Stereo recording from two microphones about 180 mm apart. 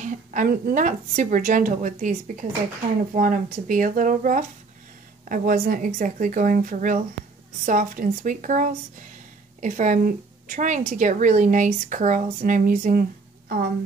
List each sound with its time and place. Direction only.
0.0 s speech: 45° right (ahead or behind)